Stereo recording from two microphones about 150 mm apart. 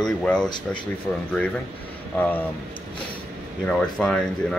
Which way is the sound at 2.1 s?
10° left (ahead or behind).